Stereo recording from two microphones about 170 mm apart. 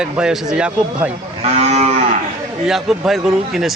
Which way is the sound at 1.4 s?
40° right (ahead or behind).